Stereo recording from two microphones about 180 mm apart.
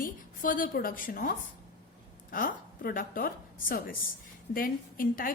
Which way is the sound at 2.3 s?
50° left (ahead or behind).